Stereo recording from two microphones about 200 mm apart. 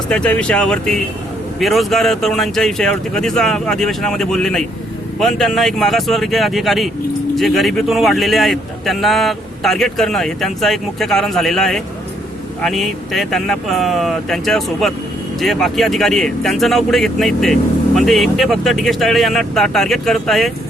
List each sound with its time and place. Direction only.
0.1 s speech: 5° left (ahead or behind)